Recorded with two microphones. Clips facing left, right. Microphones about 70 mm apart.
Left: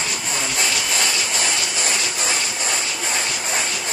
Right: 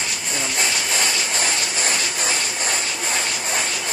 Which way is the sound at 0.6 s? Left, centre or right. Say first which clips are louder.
Right 1 dB; right.